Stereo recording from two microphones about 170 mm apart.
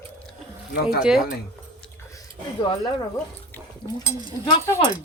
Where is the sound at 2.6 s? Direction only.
30° left (ahead or behind).